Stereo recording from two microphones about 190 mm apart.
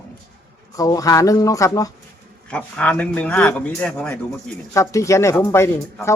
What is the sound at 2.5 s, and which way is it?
Speech, 5° left (ahead or behind).